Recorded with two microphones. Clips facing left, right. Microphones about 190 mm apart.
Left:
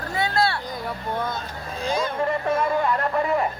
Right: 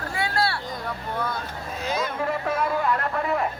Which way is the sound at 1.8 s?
30° left (ahead or behind).